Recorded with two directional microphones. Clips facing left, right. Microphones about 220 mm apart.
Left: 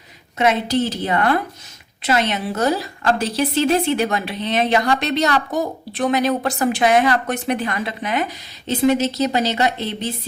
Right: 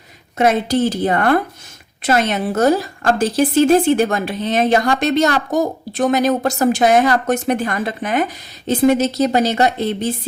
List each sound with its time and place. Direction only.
0.3 s a woman's voice: 50° right (ahead or behind)